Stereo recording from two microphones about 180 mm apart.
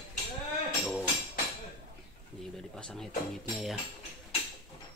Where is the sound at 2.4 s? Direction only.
Centre (ahead or behind).